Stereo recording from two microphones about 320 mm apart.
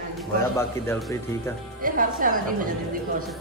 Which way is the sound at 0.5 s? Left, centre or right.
Centre.